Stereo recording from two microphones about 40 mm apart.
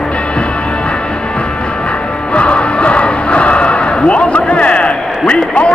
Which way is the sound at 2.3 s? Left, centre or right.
Left.